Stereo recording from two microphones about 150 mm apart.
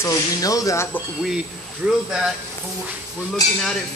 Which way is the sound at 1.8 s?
10° right (ahead or behind).